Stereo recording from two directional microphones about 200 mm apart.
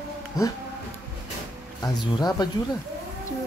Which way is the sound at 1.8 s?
20° left (ahead or behind).